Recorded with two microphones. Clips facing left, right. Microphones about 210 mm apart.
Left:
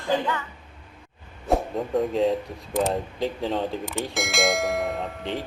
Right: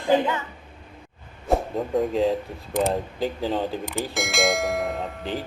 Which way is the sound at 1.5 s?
Centre (ahead or behind).